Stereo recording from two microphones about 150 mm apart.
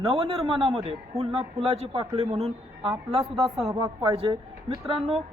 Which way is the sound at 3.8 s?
25° right (ahead or behind).